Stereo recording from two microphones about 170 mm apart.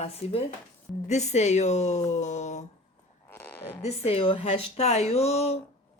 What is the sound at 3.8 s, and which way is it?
Speech, 35° left (ahead or behind).